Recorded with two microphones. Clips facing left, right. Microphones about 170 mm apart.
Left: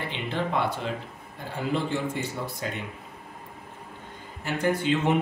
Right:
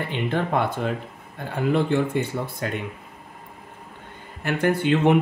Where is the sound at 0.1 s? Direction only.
50° right (ahead or behind).